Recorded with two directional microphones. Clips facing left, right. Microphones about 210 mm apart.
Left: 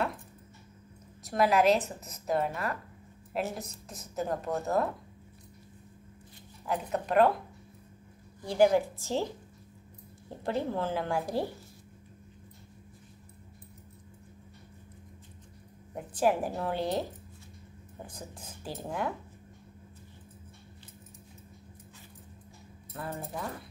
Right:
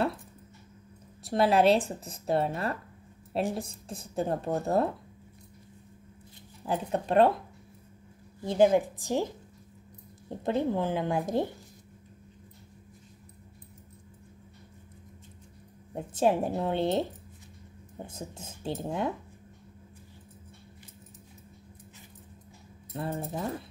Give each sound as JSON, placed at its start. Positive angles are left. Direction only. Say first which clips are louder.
{"t": 1.2, "sound": "a woman's voice", "louder": "right 2 dB", "side_deg": -30}
{"t": 6.6, "sound": "a woman's voice", "louder": "right 2 dB", "side_deg": -30}
{"t": 8.5, "sound": "a woman's voice", "louder": "right 1 dB", "side_deg": -20}
{"t": 10.4, "sound": "a woman's voice", "louder": "right 3 dB", "side_deg": -20}
{"t": 15.9, "sound": "a woman's voice", "louder": "right 2 dB", "side_deg": -25}
{"t": 22.9, "sound": "a woman's voice", "louder": "right 4 dB", "side_deg": -25}